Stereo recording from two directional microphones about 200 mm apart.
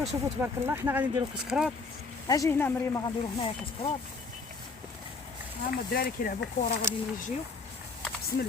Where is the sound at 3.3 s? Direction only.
25° left (ahead or behind).